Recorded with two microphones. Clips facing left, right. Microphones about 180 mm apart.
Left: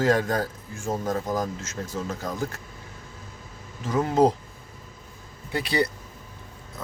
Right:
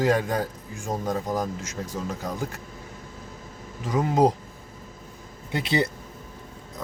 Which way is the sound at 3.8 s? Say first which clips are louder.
Left 1 dB; 15° right (ahead or behind).